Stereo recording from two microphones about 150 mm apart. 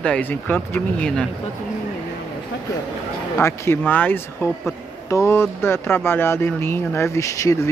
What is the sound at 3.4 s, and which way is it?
Speech, 15° left (ahead or behind).